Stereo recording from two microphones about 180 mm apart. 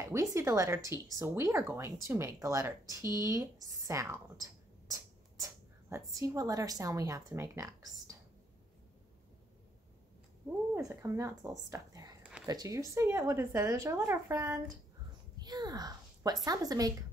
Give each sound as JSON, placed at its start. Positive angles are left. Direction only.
{"t": 0.0, "sound": "speech", "side_deg": -15}
{"t": 10.7, "sound": "speech", "side_deg": -15}